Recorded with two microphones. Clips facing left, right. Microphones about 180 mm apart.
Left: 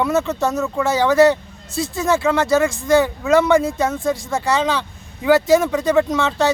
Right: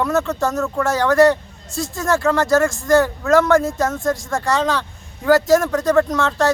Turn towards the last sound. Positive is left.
turn(degrees=0)  # may be behind; listen again after turning